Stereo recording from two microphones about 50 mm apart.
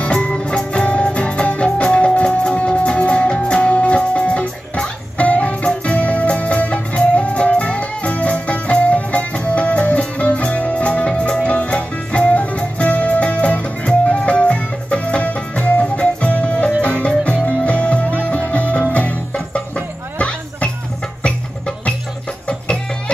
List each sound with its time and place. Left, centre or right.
0.2 s music: left